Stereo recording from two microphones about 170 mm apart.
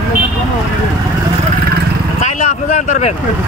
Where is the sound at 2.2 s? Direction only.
45° left (ahead or behind).